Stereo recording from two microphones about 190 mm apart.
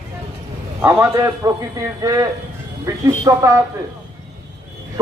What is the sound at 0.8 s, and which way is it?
Speech, 15° right (ahead or behind).